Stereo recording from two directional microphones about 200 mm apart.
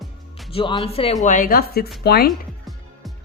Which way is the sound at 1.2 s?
40° left (ahead or behind).